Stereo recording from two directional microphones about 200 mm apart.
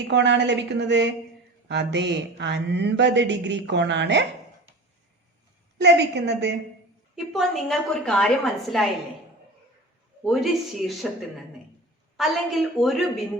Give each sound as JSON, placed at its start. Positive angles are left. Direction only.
{"t": 0.1, "sound": "speech", "side_deg": -60}
{"t": 5.8, "sound": "speech", "side_deg": -60}
{"t": 7.2, "sound": "speech", "side_deg": 0}
{"t": 10.2, "sound": "speech", "side_deg": 0}